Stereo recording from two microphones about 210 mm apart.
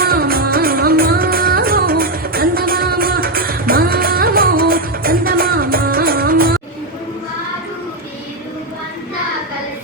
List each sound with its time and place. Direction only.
0.0 s music: 45° right (ahead or behind)